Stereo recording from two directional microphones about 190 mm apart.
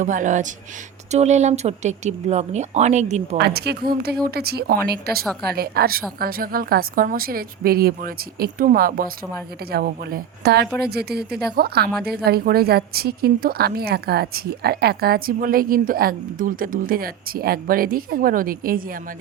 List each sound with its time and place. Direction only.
0.0 s speech: 40° right (ahead or behind)
3.3 s a woman's voice: 60° right (ahead or behind)